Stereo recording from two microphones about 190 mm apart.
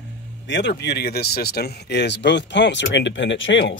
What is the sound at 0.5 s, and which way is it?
Speech, 65° left (ahead or behind).